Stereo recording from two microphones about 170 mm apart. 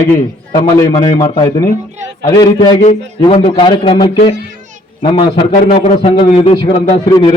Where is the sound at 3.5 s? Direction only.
30° left (ahead or behind).